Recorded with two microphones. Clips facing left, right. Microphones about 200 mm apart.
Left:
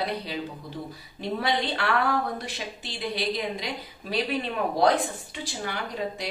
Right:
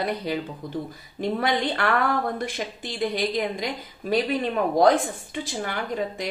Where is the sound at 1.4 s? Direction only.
50° right (ahead or behind).